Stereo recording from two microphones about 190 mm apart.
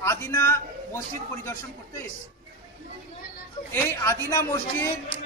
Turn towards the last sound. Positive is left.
turn(degrees=15)  # may be behind; listen again after turning